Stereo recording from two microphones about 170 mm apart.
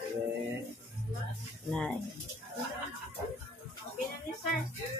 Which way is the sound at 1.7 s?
5° left (ahead or behind).